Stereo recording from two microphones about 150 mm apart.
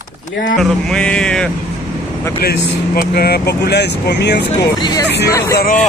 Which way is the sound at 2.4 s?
90° left.